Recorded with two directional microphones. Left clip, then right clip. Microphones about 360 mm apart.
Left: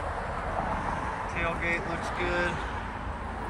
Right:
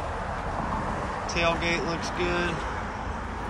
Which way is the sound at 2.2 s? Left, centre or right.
Centre.